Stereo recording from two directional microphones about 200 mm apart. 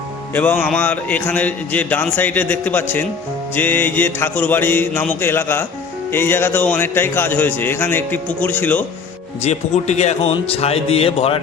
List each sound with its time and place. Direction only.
0.3 s speech: 10° left (ahead or behind)
9.4 s speech: 35° left (ahead or behind)